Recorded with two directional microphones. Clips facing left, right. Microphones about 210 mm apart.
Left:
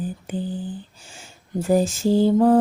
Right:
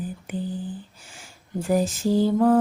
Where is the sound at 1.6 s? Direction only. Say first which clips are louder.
Left 3 dB; 25° left (ahead or behind).